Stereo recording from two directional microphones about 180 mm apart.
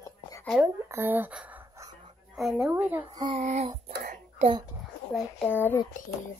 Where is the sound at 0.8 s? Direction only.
15° right (ahead or behind).